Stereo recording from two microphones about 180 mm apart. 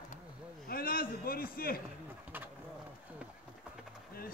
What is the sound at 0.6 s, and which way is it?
A man's voice, 55° left (ahead or behind).